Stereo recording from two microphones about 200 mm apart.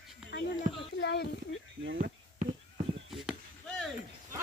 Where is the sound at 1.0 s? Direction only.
55° left (ahead or behind).